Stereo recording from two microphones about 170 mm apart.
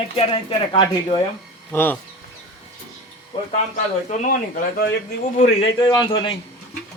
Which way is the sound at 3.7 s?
50° left (ahead or behind).